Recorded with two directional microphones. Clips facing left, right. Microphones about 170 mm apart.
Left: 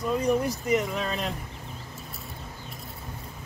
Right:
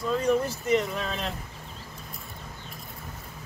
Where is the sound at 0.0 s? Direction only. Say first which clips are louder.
Even; 15° left (ahead or behind).